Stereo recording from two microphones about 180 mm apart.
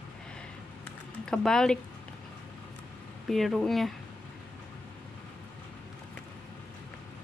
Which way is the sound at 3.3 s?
Centre (ahead or behind).